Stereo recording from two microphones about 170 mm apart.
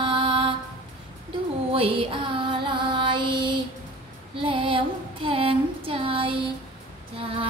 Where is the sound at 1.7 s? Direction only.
30° right (ahead or behind).